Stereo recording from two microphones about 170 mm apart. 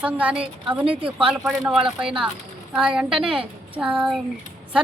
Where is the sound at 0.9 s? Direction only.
30° right (ahead or behind).